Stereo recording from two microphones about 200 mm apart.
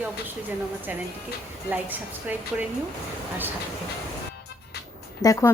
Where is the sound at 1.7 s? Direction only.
10° right (ahead or behind).